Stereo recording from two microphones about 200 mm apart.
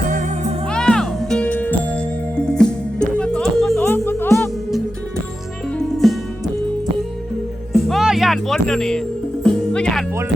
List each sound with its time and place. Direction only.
0.1 s music: 40° right (ahead or behind)
0.7 s music: 5° left (ahead or behind)
6.0 s music: centre (ahead or behind)
7.7 s music: centre (ahead or behind)